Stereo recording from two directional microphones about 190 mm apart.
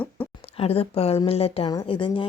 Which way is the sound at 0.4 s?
30° left (ahead or behind).